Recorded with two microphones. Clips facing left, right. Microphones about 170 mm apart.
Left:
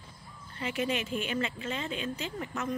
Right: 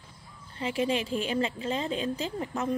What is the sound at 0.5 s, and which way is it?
A woman's voice, 30° right (ahead or behind).